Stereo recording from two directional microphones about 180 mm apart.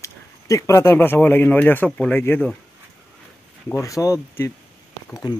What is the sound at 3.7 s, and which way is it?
Speech, 15° left (ahead or behind).